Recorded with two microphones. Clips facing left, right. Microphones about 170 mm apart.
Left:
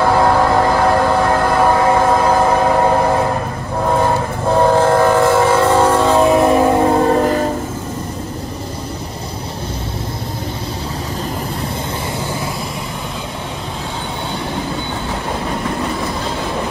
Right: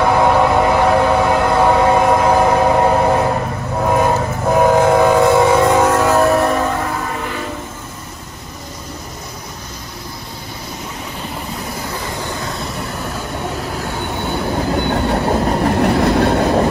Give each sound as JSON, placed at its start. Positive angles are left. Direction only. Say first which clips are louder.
{"t": 0.1, "sound": "train", "louder": "even", "side_deg": -15}
{"t": 5.9, "sound": "vehicle", "louder": "left 1 dB", "side_deg": -5}
{"t": 6.4, "sound": "train", "louder": "left 5 dB", "side_deg": 20}
{"t": 15.8, "sound": "train", "louder": "right 8 dB", "side_deg": -70}